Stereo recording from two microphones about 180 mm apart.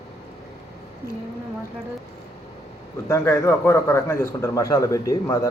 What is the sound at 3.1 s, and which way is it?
A man's voice, 15° left (ahead or behind).